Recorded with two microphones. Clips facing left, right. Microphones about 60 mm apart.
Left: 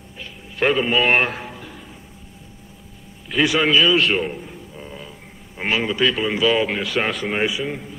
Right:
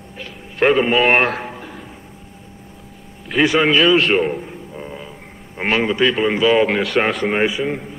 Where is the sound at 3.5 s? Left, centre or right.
Centre.